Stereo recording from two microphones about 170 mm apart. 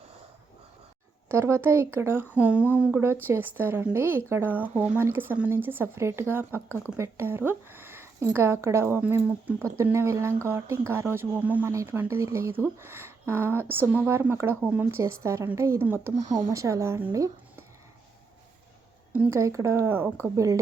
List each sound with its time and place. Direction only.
1.3 s speech: 15° right (ahead or behind)
19.1 s speech: 15° right (ahead or behind)